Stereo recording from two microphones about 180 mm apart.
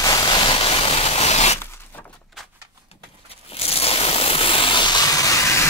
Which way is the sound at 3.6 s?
35° left (ahead or behind).